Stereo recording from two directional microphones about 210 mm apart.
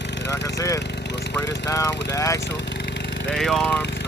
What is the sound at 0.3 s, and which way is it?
Speech, 15° left (ahead or behind).